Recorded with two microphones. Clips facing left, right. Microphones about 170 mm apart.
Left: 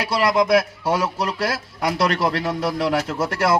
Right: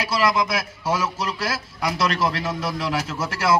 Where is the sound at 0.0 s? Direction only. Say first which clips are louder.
Left 3 dB; 55° left (ahead or behind).